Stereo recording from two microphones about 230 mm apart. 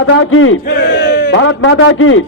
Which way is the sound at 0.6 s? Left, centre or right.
Left.